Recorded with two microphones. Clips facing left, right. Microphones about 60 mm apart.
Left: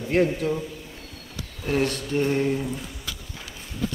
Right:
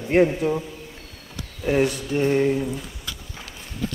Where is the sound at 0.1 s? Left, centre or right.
Right.